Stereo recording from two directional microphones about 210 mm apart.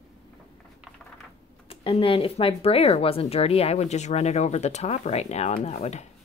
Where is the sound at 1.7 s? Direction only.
25° left (ahead or behind).